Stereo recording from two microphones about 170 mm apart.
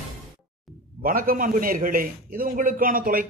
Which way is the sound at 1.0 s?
55° right (ahead or behind).